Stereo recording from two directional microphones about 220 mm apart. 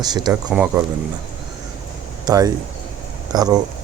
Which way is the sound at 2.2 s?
15° right (ahead or behind).